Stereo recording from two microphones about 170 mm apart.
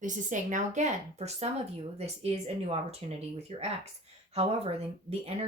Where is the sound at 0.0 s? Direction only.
50° right (ahead or behind).